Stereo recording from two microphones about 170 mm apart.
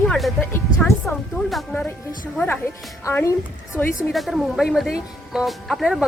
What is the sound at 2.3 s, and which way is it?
A woman's voice, 15° left (ahead or behind).